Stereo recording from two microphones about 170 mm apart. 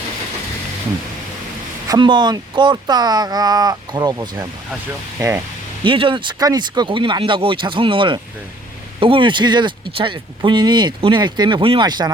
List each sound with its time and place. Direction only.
1.9 s speech: 25° right (ahead or behind)
5.8 s speech: 30° right (ahead or behind)